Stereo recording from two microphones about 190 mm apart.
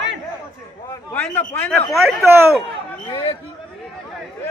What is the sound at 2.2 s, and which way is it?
Speech, 15° right (ahead or behind).